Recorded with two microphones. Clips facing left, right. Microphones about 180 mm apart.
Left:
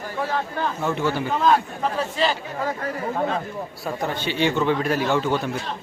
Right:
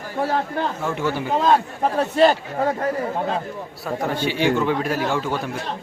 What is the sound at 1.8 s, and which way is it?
Speech, 55° right (ahead or behind).